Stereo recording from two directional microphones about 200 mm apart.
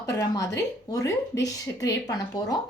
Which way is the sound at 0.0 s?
15° left (ahead or behind).